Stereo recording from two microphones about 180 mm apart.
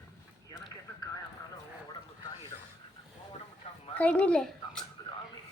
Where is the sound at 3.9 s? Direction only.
10° left (ahead or behind).